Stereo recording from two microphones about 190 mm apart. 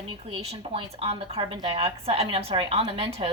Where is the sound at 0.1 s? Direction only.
30° right (ahead or behind).